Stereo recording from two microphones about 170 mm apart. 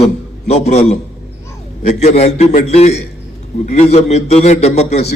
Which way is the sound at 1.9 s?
40° left (ahead or behind).